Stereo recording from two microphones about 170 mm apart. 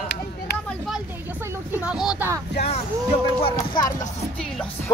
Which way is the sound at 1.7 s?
5° right (ahead or behind).